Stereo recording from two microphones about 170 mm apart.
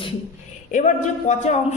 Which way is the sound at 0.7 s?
45° left (ahead or behind).